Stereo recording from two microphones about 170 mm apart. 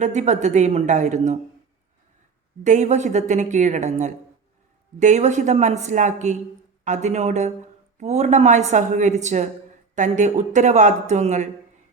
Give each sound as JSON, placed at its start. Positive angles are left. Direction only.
{"t": 0.0, "sound": "a woman's voice", "side_deg": -45}
{"t": 2.6, "sound": "a woman's voice", "side_deg": -45}